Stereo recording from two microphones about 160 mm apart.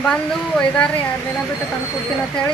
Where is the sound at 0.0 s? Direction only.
5° left (ahead or behind).